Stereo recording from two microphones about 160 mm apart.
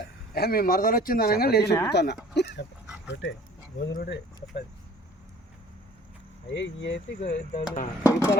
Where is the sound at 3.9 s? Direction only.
70° left (ahead or behind).